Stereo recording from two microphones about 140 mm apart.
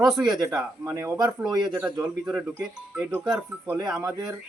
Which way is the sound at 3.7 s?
25° right (ahead or behind).